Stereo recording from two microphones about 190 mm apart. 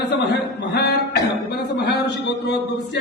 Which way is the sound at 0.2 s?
60° left (ahead or behind).